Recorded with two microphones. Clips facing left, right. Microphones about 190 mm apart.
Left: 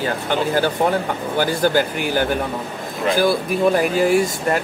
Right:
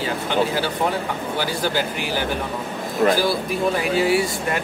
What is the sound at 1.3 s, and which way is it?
Speech, 50° left (ahead or behind).